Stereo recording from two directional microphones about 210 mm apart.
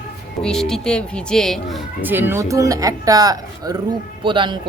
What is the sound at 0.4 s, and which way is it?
Speech, centre (ahead or behind).